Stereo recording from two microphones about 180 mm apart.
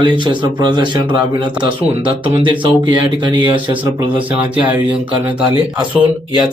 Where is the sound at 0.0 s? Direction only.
25° right (ahead or behind).